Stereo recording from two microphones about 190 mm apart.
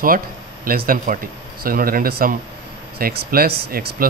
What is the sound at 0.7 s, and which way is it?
Speech, 50° right (ahead or behind).